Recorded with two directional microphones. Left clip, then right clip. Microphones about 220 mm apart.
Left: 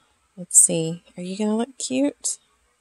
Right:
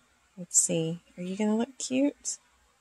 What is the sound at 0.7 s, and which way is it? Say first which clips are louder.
Speech: left 5 dB; 25° left (ahead or behind).